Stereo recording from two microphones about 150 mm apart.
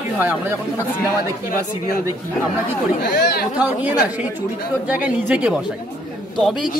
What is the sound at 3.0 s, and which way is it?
Speech, 90° left.